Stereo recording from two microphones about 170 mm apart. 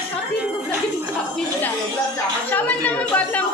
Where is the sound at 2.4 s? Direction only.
10° left (ahead or behind).